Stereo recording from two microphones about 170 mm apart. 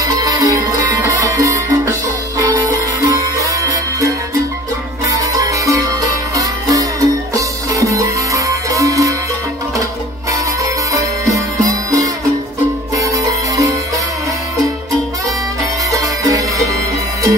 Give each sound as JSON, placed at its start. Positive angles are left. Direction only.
{"t": 0.0, "sound": "music", "side_deg": -20}
{"t": 5.0, "sound": "music", "side_deg": -20}
{"t": 10.6, "sound": "music", "side_deg": -20}
{"t": 15.9, "sound": "music", "side_deg": -20}